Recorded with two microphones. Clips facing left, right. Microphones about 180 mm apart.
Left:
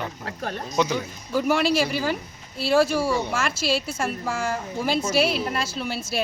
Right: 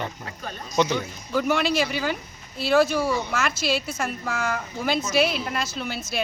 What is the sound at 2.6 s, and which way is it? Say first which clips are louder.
A woman's voice: even; 30° left (ahead or behind).